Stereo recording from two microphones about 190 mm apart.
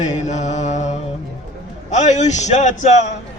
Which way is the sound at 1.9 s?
40° left (ahead or behind).